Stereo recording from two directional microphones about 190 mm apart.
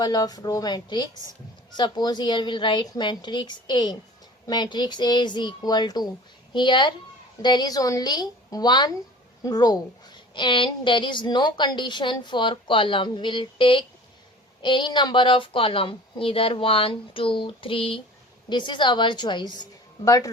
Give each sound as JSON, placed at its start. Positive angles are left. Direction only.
{"t": 0.0, "sound": "a woman's voice", "side_deg": 20}